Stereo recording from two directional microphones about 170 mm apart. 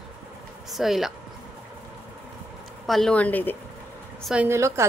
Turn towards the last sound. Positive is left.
turn(degrees=-15)  # may be behind; listen again after turning